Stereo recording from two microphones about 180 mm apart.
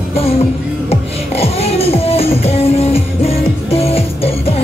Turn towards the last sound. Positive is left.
turn(degrees=35)  # may be behind; listen again after turning